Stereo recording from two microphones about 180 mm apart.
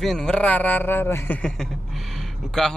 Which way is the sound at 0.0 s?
Centre (ahead or behind).